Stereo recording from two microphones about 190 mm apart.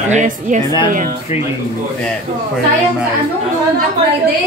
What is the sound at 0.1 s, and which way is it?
Speech, 40° right (ahead or behind).